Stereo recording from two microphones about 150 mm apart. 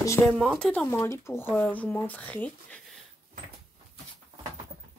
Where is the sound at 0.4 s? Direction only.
5° left (ahead or behind).